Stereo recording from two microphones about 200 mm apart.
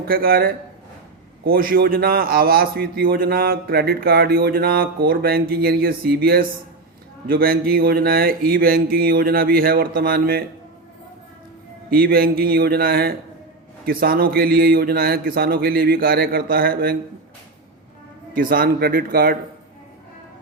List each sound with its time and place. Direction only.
0.0 s a man's voice: 50° right (ahead or behind)
11.9 s a man's voice: 50° right (ahead or behind)
18.3 s a man's voice: 45° right (ahead or behind)